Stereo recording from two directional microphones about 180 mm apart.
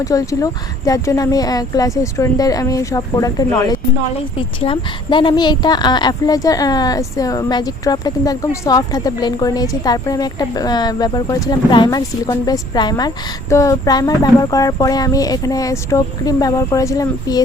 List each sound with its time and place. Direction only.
0.0 s speech: 20° left (ahead or behind)